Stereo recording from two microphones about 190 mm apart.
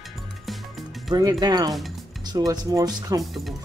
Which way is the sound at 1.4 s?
20° right (ahead or behind).